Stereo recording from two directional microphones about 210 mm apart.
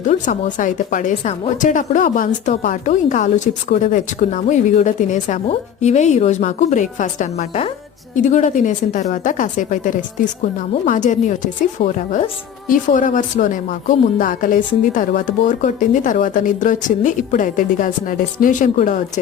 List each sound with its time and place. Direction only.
0.0 s speech: 35° left (ahead or behind)